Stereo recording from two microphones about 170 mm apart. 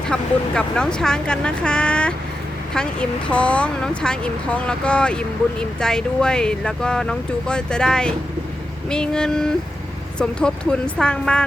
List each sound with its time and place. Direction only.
0.1 s speech: 5° left (ahead or behind)